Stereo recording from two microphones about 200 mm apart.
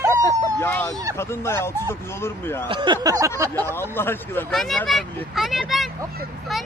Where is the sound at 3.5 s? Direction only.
10° left (ahead or behind).